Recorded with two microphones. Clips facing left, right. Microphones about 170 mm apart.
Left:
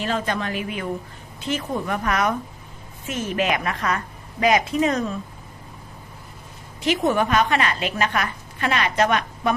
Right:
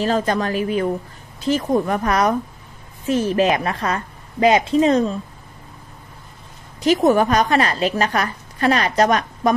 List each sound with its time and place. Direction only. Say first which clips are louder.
0.0 s a woman's voice: right 6 dB; 40° right (ahead or behind)
6.8 s a woman's voice: right 6 dB; 40° right (ahead or behind)